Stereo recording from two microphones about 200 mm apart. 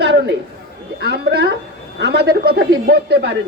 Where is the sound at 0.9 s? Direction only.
55° right (ahead or behind).